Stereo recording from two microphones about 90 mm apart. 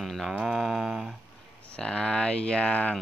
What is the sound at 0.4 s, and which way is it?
Speech, 5° right (ahead or behind).